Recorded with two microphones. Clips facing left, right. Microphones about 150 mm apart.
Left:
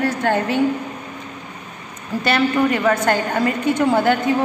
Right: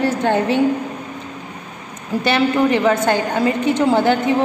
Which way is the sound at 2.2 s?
20° right (ahead or behind).